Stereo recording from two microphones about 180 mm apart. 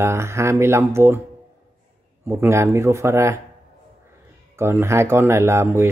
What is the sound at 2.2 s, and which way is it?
Speech, 15° right (ahead or behind).